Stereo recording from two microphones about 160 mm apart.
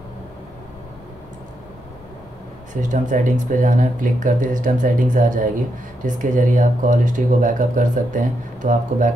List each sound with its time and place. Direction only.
2.7 s speech: 50° right (ahead or behind)